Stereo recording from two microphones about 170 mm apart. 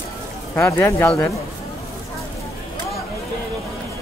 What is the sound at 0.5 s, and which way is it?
Speech, 15° left (ahead or behind).